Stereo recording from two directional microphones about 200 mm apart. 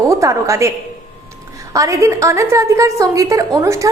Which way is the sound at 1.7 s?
15° right (ahead or behind).